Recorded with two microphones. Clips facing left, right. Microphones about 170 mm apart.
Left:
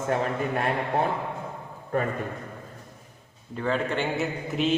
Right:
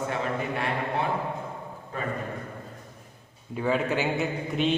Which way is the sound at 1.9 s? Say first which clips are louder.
Left 8 dB; 55° left (ahead or behind).